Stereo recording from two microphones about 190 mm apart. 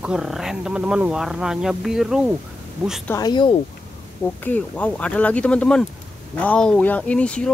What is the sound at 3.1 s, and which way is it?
Speech, 20° left (ahead or behind).